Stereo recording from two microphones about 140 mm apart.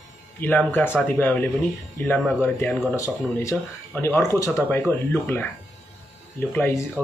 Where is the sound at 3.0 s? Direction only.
20° left (ahead or behind).